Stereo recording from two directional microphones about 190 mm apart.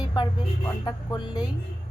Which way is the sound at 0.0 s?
20° left (ahead or behind).